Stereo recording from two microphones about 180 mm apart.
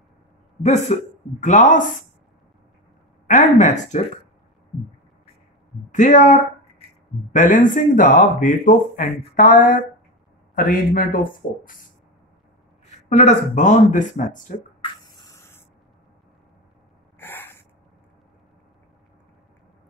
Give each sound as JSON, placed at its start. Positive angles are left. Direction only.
{"t": 0.6, "sound": "speech", "side_deg": 40}
{"t": 3.3, "sound": "speech", "side_deg": 45}
{"t": 5.9, "sound": "speech", "side_deg": 45}
{"t": 13.1, "sound": "speech", "side_deg": 40}
{"t": 14.8, "sound": "spray", "side_deg": 25}
{"t": 17.2, "sound": "snort", "side_deg": 10}